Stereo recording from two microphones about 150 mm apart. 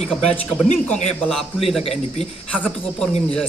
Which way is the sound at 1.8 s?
40° left (ahead or behind).